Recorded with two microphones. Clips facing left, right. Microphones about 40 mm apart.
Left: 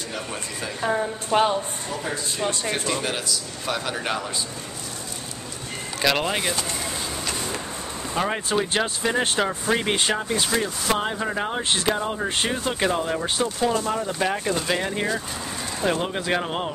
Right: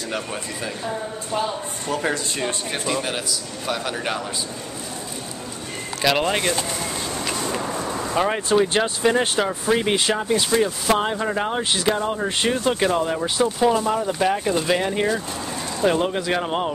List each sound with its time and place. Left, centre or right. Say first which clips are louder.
0.8 s a woman's voice: left 9 dB; left
1.9 s speech: right 10 dB; right
2.7 s speech: right 1 dB; centre
5.9 s speech: right 2 dB; centre
8.1 s speech: right 4 dB; centre
13.6 s speech: right 4 dB; centre